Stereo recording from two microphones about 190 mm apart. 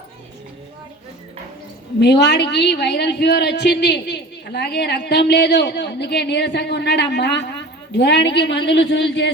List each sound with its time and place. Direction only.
2.0 s a woman's voice: 60° left (ahead or behind)